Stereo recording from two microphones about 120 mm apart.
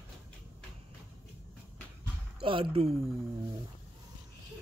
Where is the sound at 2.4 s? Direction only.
50° right (ahead or behind).